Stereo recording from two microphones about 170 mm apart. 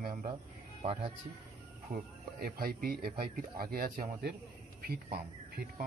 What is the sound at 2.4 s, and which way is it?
A man's voice, 65° right (ahead or behind).